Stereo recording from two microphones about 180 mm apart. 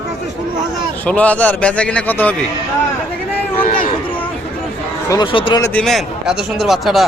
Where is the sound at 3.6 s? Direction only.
50° left (ahead or behind).